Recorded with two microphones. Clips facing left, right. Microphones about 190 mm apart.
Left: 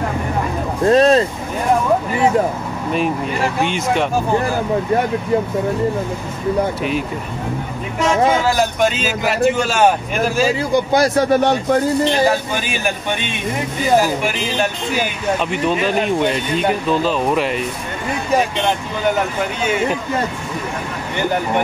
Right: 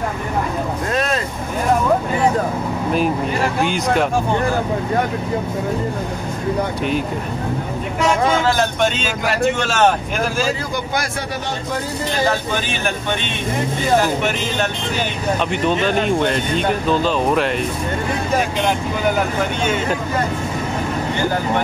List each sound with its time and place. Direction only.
0.8 s vehicle: 30° left (ahead or behind)
2.9 s speech: centre (ahead or behind)
8.5 s speech: 5° left (ahead or behind)
11.0 s speech: 40° left (ahead or behind)
12.6 s speech: 10° left (ahead or behind)
19.6 s speech: 5° left (ahead or behind)